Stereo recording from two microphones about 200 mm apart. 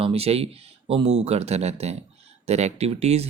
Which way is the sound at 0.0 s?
30° right (ahead or behind).